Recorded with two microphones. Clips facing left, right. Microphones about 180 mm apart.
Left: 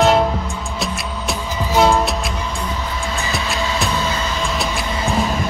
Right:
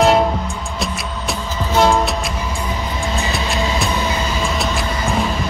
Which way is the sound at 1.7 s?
Centre (ahead or behind).